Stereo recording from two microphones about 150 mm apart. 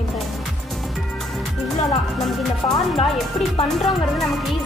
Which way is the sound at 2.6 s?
40° left (ahead or behind).